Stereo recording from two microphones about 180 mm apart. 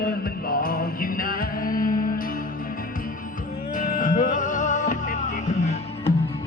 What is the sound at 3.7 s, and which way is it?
Music, 45° left (ahead or behind).